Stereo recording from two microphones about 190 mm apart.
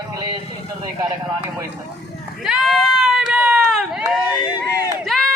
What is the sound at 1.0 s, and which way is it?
Speech, 15° right (ahead or behind).